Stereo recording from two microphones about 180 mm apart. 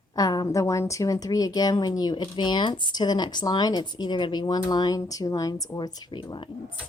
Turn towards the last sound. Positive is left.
turn(degrees=25)  # may be behind; listen again after turning